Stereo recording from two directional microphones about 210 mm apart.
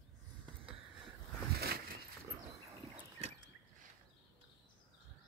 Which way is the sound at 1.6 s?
45° right (ahead or behind).